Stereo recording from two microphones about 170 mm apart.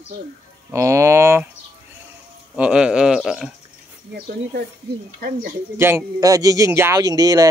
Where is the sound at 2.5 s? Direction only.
5° right (ahead or behind).